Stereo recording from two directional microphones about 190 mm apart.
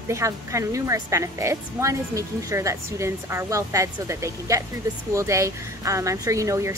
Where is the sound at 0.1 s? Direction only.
15° right (ahead or behind).